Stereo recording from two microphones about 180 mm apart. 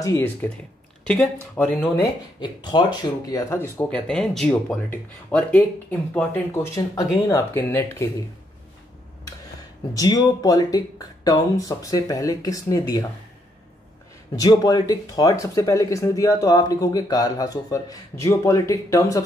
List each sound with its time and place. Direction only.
0.0 s speech: 15° left (ahead or behind)
2.4 s speech: 25° left (ahead or behind)
3.7 s speech: 5° left (ahead or behind)
9.9 s speech: 20° left (ahead or behind)
14.3 s speech: 20° left (ahead or behind)